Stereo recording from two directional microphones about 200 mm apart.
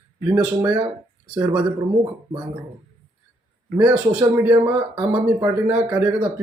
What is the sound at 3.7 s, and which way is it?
Speech, 10° right (ahead or behind).